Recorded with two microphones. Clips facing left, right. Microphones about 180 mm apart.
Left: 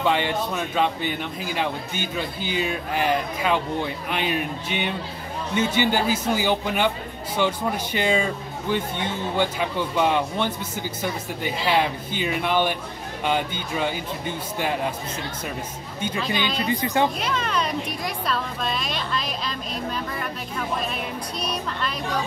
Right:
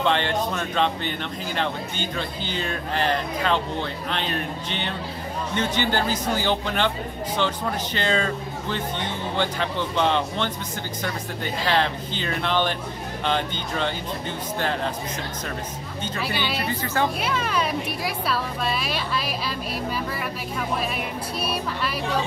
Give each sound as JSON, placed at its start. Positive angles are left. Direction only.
{"t": 0.0, "sound": "speech", "side_deg": 10}
{"t": 16.2, "sound": "a woman's voice", "side_deg": -10}
{"t": 16.8, "sound": "speech", "side_deg": 15}
{"t": 17.2, "sound": "speech", "side_deg": -5}